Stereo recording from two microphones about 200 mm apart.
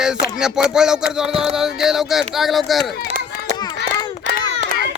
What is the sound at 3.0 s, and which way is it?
Chop, 35° right (ahead or behind).